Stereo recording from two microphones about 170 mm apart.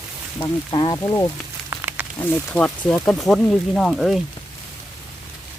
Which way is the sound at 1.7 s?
10° right (ahead or behind).